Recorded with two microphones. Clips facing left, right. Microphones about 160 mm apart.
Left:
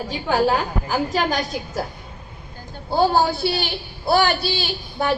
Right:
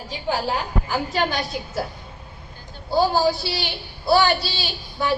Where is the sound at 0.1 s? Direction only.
60° left (ahead or behind).